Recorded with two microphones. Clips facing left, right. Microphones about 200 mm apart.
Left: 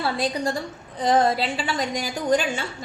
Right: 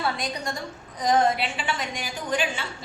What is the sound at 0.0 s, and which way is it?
A woman's voice, 30° left (ahead or behind).